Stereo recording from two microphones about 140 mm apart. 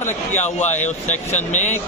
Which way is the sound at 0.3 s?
55° left (ahead or behind).